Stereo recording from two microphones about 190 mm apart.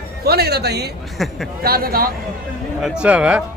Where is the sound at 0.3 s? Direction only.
55° right (ahead or behind).